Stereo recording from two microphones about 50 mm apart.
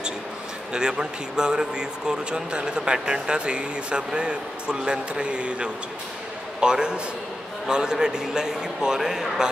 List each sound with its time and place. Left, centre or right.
0.7 s speech: centre